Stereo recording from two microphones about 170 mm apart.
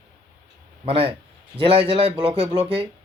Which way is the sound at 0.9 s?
35° right (ahead or behind).